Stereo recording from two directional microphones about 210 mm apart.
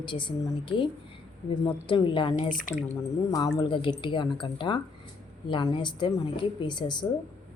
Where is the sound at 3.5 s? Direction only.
25° left (ahead or behind).